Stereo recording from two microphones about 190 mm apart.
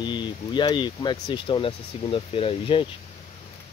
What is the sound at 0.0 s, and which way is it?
Speech, 25° left (ahead or behind).